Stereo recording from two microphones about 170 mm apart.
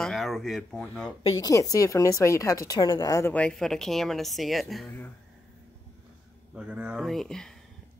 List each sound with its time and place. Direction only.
0.0 s speech: centre (ahead or behind)
1.4 s speech: 20° left (ahead or behind); by 4.8 s centre (ahead or behind)
6.5 s speech: 5° right (ahead or behind)